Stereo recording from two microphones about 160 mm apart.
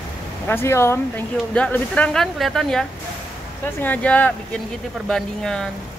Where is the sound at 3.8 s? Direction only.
10° left (ahead or behind).